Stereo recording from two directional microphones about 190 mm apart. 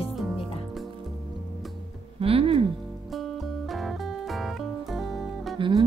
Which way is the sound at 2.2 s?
30° right (ahead or behind).